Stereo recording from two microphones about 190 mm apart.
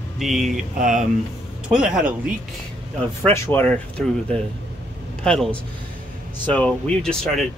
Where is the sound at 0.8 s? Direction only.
40° right (ahead or behind).